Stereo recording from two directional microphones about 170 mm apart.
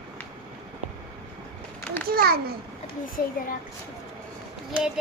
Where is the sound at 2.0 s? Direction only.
60° right (ahead or behind).